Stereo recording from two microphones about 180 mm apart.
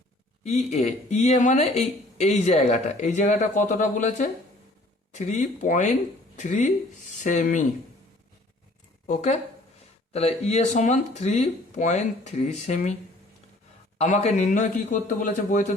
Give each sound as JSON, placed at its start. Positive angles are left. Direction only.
{"t": 0.4, "sound": "a man's voice", "side_deg": 40}
{"t": 9.0, "sound": "speech", "side_deg": 40}
{"t": 14.0, "sound": "a man's voice", "side_deg": 40}